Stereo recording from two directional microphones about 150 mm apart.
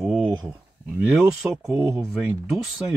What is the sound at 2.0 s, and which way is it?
Speech, centre (ahead or behind).